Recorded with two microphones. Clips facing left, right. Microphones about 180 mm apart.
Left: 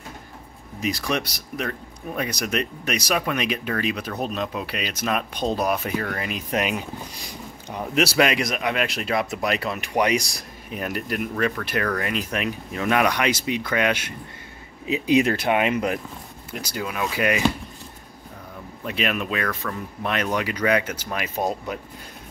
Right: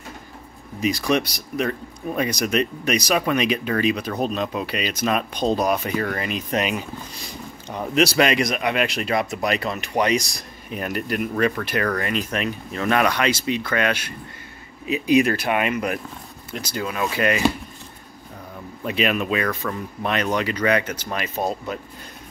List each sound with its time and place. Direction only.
0.7 s speech: centre (ahead or behind); by 16.0 s 20° left (ahead or behind)
16.5 s speech: 10° left (ahead or behind)
18.9 s speech: centre (ahead or behind)